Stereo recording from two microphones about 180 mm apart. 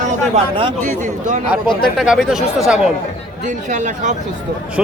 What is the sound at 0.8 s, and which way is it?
Speech, 45° right (ahead or behind).